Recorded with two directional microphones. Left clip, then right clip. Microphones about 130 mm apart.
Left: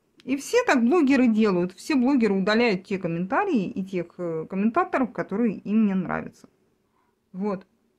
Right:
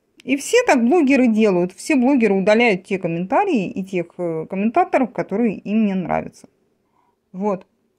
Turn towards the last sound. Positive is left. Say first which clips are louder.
# right 7 dB
turn(degrees=-20)  # may be behind; listen again after turning